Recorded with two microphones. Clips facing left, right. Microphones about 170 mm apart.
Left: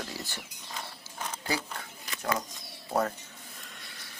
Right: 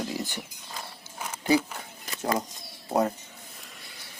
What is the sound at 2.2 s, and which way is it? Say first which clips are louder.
Speech: right 4 dB; 25° right (ahead or behind).